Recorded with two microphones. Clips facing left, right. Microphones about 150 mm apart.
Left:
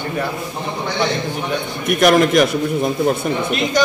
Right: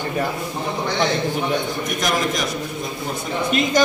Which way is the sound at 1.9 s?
65° left (ahead or behind).